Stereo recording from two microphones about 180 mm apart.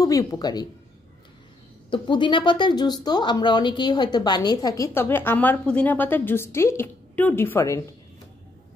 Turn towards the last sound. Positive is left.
turn(degrees=15)  # may be behind; listen again after turning